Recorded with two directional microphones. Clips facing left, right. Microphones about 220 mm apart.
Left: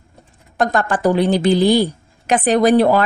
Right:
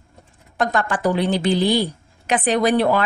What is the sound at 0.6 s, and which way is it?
A woman's voice, 40° left (ahead or behind).